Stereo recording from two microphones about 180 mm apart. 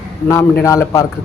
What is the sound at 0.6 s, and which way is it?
Speech, 15° left (ahead or behind).